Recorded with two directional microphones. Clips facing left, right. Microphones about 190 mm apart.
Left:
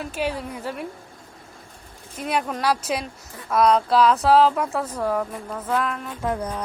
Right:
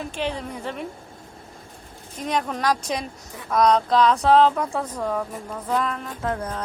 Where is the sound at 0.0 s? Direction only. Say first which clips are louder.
Left 1 dB; 5° left (ahead or behind).